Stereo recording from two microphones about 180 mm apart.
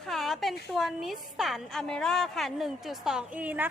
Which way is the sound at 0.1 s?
Centre (ahead or behind).